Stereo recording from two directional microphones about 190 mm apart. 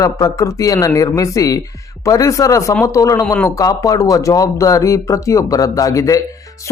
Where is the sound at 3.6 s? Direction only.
20° left (ahead or behind).